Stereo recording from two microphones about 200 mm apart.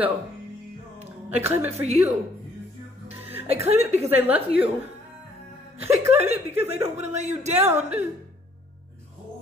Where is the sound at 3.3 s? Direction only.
10° right (ahead or behind).